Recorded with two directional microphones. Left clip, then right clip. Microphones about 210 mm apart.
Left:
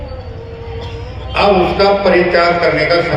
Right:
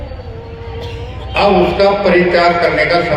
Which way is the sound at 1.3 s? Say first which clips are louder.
Even; 25° right (ahead or behind).